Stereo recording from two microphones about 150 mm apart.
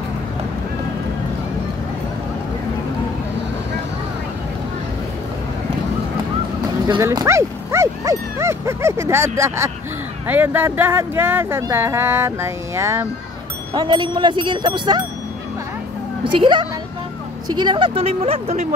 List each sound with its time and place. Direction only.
7.0 s speech: 20° right (ahead or behind)
13.7 s speech: 30° right (ahead or behind)
16.3 s speech: 30° right (ahead or behind)